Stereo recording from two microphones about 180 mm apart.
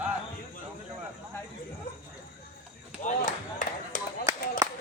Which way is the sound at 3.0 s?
45° left (ahead or behind).